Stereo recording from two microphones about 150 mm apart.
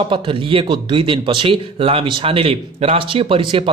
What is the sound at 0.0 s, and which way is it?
Speech, 35° right (ahead or behind).